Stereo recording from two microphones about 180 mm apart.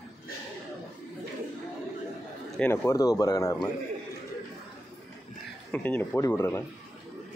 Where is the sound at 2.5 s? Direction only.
10° left (ahead or behind).